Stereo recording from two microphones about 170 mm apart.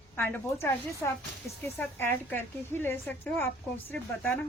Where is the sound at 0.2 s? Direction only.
15° left (ahead or behind).